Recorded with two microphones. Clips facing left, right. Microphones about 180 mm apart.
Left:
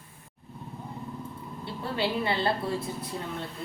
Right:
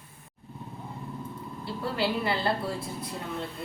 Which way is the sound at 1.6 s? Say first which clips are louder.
Right 1 dB; 25° left (ahead or behind).